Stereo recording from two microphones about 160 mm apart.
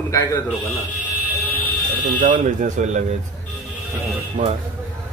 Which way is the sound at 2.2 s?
55° right (ahead or behind).